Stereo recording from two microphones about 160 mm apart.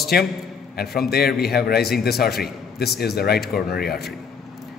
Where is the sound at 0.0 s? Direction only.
80° left.